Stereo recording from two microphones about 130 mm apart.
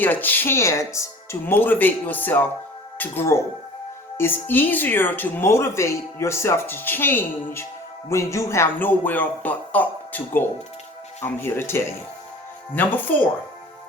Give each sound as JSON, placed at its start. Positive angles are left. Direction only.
{"t": 0.0, "sound": "speech", "side_deg": 15}